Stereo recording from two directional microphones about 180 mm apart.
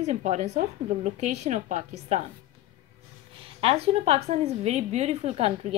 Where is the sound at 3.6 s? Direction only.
30° right (ahead or behind).